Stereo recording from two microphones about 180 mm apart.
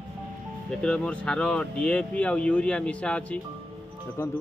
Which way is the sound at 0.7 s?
5° left (ahead or behind).